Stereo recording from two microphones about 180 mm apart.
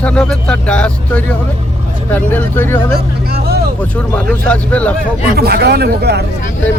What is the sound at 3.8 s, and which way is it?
Speech, 5° left (ahead or behind).